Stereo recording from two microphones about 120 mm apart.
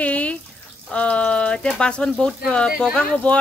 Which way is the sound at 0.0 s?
10° left (ahead or behind).